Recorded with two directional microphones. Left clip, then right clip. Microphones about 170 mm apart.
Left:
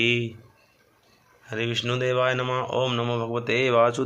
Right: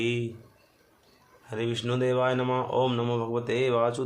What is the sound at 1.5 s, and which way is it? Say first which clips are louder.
Speech: left 3 dB; 15° left (ahead or behind).